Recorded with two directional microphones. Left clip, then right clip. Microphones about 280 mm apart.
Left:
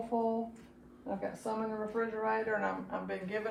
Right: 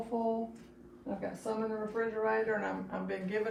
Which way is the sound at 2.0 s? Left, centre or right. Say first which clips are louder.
Right 2 dB; left.